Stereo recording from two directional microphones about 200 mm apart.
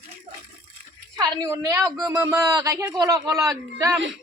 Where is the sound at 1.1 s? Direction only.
15° right (ahead or behind).